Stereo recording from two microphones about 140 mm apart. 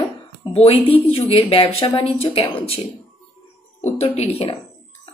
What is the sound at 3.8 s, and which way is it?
Speech, 50° left (ahead or behind).